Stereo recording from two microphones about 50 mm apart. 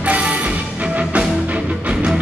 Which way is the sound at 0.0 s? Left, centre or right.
Right.